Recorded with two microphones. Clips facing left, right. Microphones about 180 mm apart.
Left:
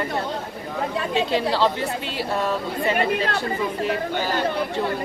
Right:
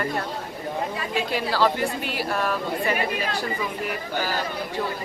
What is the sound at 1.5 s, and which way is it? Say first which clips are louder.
Speech: left 1 dB; 25° left (ahead or behind).